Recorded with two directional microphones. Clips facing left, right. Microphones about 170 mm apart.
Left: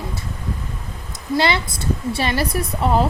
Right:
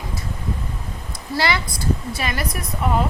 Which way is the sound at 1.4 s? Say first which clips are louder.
Left 2 dB; 25° left (ahead or behind).